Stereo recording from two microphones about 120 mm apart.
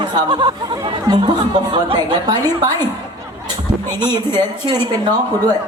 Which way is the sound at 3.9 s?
40° right (ahead or behind).